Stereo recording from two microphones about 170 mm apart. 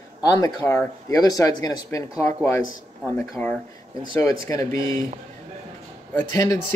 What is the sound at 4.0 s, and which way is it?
Speech, 20° left (ahead or behind).